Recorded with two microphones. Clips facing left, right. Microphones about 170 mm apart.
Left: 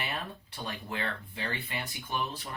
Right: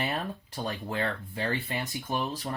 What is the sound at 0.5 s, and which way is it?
Speech, 40° right (ahead or behind).